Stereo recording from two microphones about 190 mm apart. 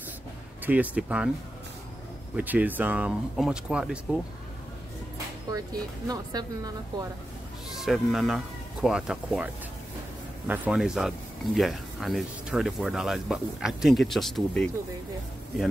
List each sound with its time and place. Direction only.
0.7 s speech: 10° right (ahead or behind)
2.3 s speech: 10° right (ahead or behind)
5.5 s speech: 20° right (ahead or behind)
7.8 s speech: centre (ahead or behind)
10.5 s speech: 5° right (ahead or behind)